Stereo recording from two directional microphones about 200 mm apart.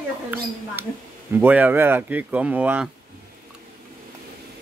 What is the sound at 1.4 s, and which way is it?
Speech, 10° right (ahead or behind).